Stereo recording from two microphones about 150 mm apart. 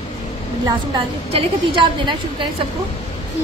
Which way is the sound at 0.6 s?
30° right (ahead or behind).